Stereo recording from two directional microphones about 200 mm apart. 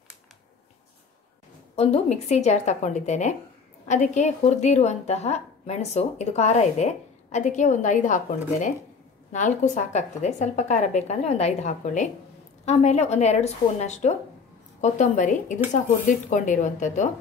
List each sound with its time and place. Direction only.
1.8 s a woman's voice: 30° left (ahead or behind)